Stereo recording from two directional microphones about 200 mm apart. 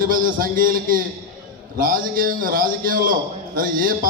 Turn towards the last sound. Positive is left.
turn(degrees=-45)  # may be behind; listen again after turning